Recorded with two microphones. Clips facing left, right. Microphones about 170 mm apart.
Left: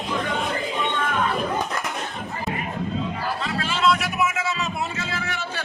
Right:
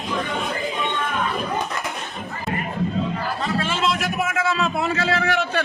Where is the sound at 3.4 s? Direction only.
50° right (ahead or behind); by 5.6 s 65° right (ahead or behind).